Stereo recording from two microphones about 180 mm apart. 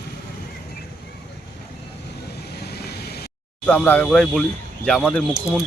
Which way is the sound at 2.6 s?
65° left (ahead or behind).